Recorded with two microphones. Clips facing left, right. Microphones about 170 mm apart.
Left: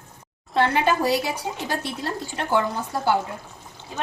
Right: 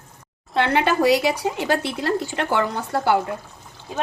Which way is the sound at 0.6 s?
70° right (ahead or behind).